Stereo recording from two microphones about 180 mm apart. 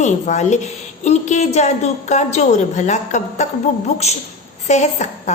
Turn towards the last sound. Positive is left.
turn(degrees=40)  # may be behind; listen again after turning